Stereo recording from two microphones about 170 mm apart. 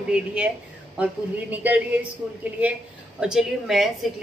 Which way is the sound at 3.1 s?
5° right (ahead or behind).